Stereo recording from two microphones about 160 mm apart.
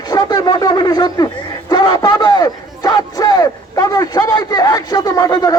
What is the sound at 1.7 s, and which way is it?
Battle cry, 25° left (ahead or behind).